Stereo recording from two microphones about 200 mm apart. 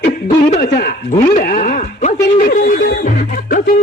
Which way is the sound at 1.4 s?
45° left (ahead or behind).